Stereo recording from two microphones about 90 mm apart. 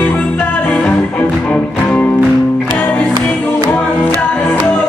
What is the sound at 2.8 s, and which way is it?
Music, 20° left (ahead or behind).